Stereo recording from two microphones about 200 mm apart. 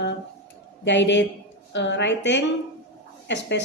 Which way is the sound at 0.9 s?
65° left (ahead or behind).